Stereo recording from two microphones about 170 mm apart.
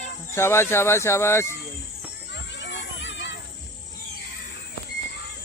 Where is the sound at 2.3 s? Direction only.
90° left.